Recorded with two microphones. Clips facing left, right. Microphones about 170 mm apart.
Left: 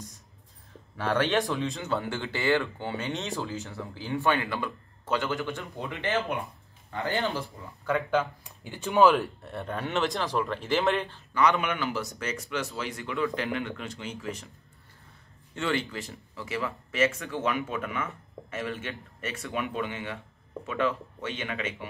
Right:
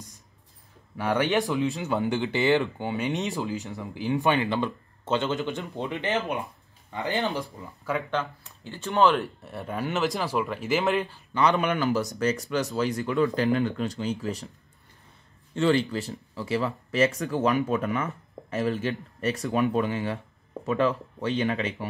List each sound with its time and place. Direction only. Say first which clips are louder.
0.9 s speech: right 2 dB; 15° right (ahead or behind)
1.3 s speech: right 3 dB; centre (ahead or behind)
1.8 s speech: right 5 dB; 15° right (ahead or behind)
7.8 s speech: left 2 dB; centre (ahead or behind)
8.2 s speech: left 2 dB; 15° left (ahead or behind)
9.0 s speech: left 1 dB; centre (ahead or behind)
11.3 s speech: right 2 dB; 35° right (ahead or behind)
15.5 s speech: right 7 dB; 35° right (ahead or behind)